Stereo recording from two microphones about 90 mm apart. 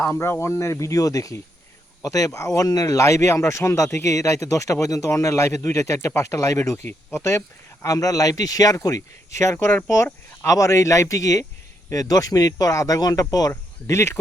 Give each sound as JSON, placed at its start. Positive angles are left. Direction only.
{"t": 0.0, "sound": "speech", "side_deg": 25}
{"t": 13.5, "sound": "speech", "side_deg": 35}